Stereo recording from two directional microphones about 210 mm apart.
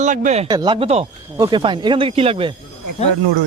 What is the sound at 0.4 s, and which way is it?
A man's voice, 20° right (ahead or behind).